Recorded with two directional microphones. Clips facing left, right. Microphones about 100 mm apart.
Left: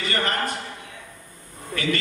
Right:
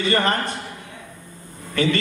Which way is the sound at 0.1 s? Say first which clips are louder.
Right 5 dB; 30° right (ahead or behind).